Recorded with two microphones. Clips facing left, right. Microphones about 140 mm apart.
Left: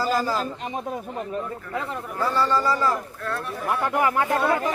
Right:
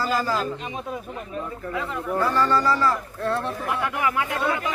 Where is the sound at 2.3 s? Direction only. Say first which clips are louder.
Left 1 dB; 15° left (ahead or behind).